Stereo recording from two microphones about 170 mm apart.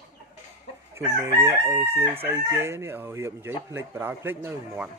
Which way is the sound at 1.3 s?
35° right (ahead or behind).